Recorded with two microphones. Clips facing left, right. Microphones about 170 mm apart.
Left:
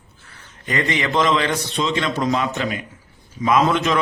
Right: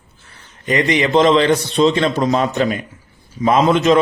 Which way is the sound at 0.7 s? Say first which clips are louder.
Right 6 dB; 20° right (ahead or behind).